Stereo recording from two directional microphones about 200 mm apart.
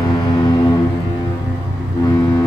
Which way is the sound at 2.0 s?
20° left (ahead or behind).